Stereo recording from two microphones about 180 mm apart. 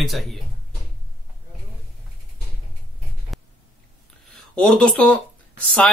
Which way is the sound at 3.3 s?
Centre (ahead or behind).